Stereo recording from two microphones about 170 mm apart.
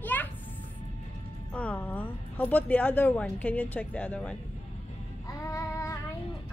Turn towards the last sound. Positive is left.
turn(degrees=20)  # may be behind; listen again after turning